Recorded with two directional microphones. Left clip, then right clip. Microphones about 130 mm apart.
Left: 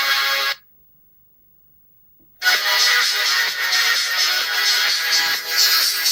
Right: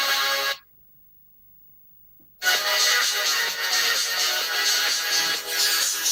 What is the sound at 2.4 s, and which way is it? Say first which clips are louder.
Music: left 5 dB; 30° left (ahead or behind).